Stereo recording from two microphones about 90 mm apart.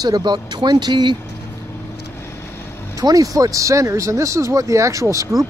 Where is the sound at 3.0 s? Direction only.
40° right (ahead or behind).